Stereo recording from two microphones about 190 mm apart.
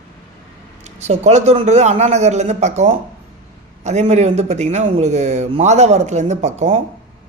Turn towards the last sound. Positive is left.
turn(degrees=-35)  # may be behind; listen again after turning